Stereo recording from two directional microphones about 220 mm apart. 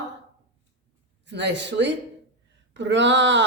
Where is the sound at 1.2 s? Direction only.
55° right (ahead or behind).